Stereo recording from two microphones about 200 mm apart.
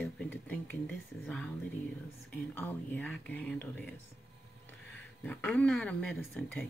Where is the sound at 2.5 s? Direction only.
10° left (ahead or behind).